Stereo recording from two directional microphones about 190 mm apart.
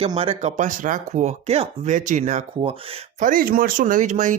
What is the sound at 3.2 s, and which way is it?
Speech, 45° right (ahead or behind).